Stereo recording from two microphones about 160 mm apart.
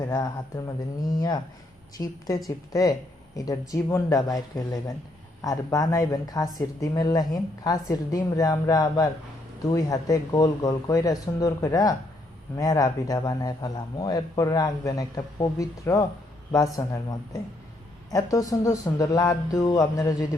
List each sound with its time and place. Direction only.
0.0 s speech: 20° left (ahead or behind)